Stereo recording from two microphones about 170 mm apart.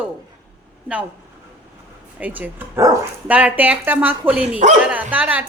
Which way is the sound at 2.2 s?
10° right (ahead or behind).